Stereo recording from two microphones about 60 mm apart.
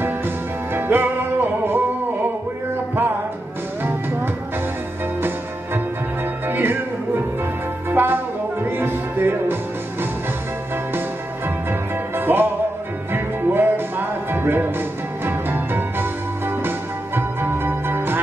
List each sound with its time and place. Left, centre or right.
0.7 s music: right
6.4 s music: right
7.9 s music: right
12.2 s music: right